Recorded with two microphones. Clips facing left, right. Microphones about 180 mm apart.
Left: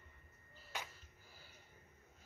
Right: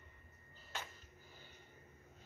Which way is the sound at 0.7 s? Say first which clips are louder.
Even; 15° left (ahead or behind).